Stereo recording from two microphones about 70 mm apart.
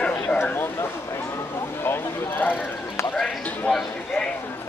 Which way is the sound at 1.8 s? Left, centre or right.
Left.